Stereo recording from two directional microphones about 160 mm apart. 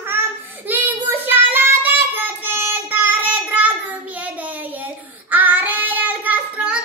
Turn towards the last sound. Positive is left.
turn(degrees=-10)  # may be behind; listen again after turning